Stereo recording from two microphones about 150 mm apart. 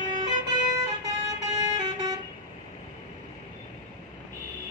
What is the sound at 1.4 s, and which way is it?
Vehicle, 25° right (ahead or behind).